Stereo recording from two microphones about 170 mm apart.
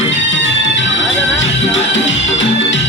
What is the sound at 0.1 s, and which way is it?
Music, 90° left.